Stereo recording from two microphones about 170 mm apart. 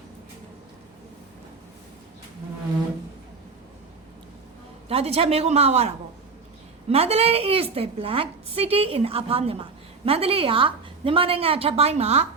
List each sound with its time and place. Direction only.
4.9 s a woman's voice: 35° right (ahead or behind)